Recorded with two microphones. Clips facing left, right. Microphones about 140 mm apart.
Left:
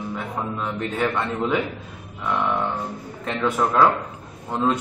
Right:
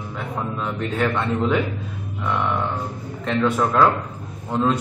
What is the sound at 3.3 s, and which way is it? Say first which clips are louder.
A man's voice: right 2 dB; 5° left (ahead or behind).